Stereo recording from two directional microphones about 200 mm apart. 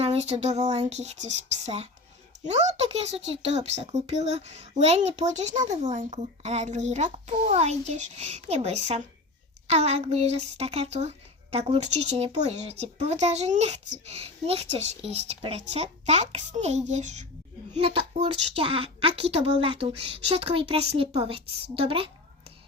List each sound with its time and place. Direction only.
0.0 s a woman's voice: 30° right (ahead or behind)